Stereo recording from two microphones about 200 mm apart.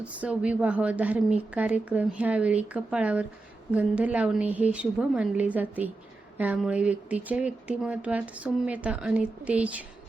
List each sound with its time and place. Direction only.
0.0 s speech: 5° right (ahead or behind)